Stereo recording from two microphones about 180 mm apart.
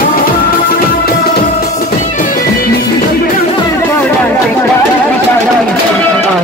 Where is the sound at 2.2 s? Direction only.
50° left (ahead or behind).